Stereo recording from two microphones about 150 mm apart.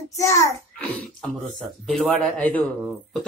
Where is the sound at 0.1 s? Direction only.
20° left (ahead or behind).